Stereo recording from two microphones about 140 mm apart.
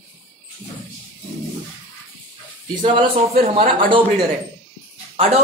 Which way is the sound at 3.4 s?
75° right (ahead or behind).